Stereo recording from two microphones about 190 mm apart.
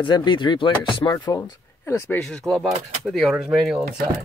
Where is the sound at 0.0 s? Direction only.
25° left (ahead or behind); by 4.1 s 5° right (ahead or behind).